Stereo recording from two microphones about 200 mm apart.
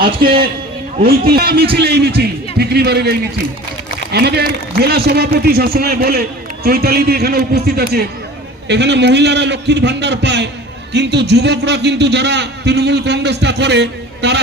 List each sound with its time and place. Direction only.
0.9 s a man's voice: 50° right (ahead or behind)